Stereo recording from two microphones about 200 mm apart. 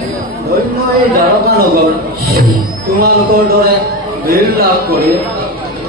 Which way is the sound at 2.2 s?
50° right (ahead or behind).